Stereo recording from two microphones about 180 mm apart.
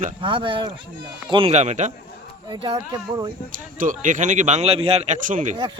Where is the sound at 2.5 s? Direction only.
30° right (ahead or behind).